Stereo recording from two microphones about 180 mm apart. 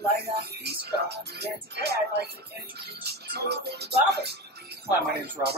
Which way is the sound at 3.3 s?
65° right (ahead or behind).